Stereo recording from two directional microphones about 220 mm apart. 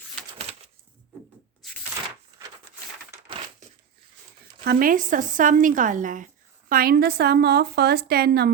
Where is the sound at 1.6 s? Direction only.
Centre (ahead or behind).